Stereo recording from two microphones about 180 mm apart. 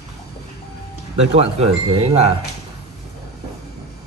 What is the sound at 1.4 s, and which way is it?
Speech, 35° right (ahead or behind).